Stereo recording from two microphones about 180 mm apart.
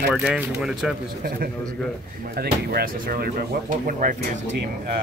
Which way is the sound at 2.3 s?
60° right (ahead or behind).